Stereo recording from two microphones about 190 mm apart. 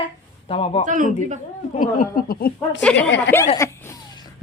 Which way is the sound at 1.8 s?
45° left (ahead or behind).